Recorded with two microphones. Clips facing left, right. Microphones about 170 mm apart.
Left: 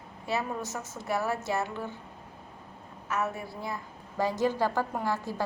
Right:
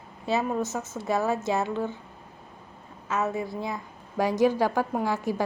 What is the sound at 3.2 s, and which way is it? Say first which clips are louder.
A woman's voice: right 5 dB; 20° right (ahead or behind).